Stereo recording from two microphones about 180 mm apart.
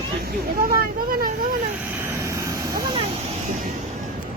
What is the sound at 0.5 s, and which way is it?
Vehicle, 55° right (ahead or behind).